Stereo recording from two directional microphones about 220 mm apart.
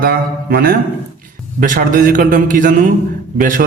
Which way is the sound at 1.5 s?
35° right (ahead or behind).